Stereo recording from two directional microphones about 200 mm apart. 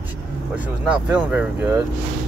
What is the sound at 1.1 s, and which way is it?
Speech, 5° right (ahead or behind).